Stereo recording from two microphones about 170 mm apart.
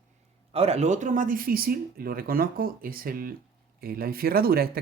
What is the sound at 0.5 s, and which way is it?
Speech, 35° right (ahead or behind).